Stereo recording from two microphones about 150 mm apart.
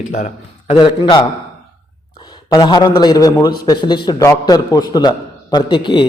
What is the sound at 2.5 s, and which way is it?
A man's voice, 25° left (ahead or behind).